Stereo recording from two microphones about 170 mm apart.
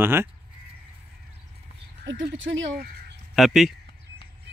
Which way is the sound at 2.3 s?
90° right.